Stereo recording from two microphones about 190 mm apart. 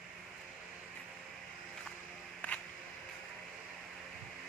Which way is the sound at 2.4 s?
5° left (ahead or behind).